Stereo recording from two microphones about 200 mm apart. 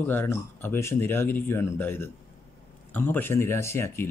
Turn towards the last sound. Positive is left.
turn(degrees=10)  # may be behind; listen again after turning